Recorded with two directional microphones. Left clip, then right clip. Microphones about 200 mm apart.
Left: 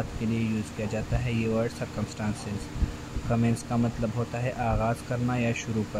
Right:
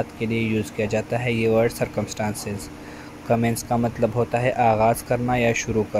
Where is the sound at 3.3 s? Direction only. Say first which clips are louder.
Right 8 dB; 15° right (ahead or behind).